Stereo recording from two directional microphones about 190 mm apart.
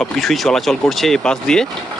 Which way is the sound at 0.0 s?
Centre (ahead or behind).